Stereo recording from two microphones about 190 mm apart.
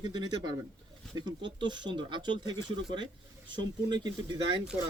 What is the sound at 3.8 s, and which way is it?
Speech, 25° right (ahead or behind).